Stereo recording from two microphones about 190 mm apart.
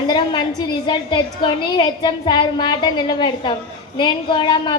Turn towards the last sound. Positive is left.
turn(degrees=20)  # may be behind; listen again after turning